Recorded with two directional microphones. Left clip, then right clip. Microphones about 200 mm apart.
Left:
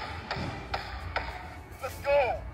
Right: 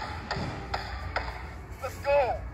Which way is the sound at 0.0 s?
Centre (ahead or behind).